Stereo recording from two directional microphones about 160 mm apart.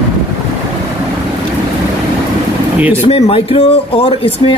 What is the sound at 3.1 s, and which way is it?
Speech, 35° left (ahead or behind).